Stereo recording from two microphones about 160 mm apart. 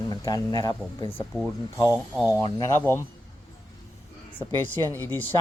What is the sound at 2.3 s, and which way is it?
Speech, 25° left (ahead or behind).